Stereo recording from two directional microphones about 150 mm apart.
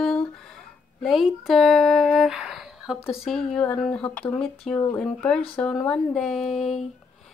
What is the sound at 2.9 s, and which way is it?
Speech, 40° left (ahead or behind).